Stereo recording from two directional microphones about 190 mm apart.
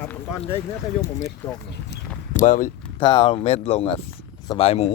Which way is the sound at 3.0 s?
25° left (ahead or behind).